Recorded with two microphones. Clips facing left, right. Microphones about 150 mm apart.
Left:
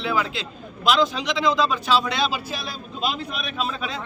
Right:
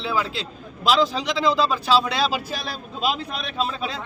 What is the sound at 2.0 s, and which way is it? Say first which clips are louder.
Speech: right 2 dB; 35° right (ahead or behind).